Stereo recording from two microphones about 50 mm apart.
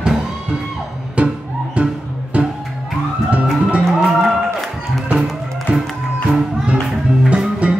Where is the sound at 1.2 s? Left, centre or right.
Right.